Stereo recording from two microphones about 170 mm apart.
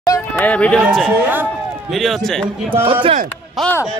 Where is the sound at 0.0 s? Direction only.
20° left (ahead or behind).